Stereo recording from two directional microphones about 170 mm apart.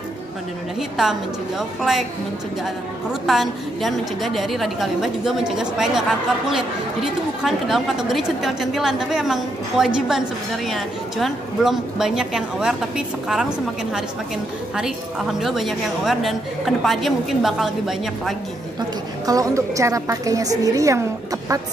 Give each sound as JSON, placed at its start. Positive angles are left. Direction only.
{"t": 0.7, "sound": "a woman's voice", "side_deg": 0}
{"t": 14.8, "sound": "a woman's voice", "side_deg": -5}
{"t": 18.8, "sound": "a woman's voice", "side_deg": -20}